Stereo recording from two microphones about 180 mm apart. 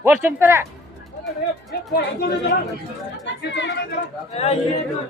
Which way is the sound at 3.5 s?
80° left.